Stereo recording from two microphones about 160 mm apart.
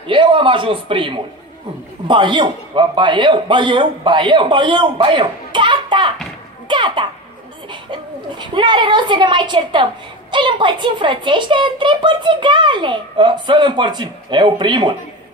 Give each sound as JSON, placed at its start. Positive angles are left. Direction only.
{"t": 0.0, "sound": "a man's voice", "side_deg": -30}